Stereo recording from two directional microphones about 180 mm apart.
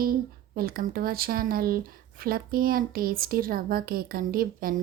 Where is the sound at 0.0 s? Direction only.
55° right (ahead or behind).